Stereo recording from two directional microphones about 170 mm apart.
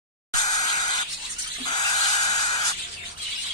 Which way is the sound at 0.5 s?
25° left (ahead or behind).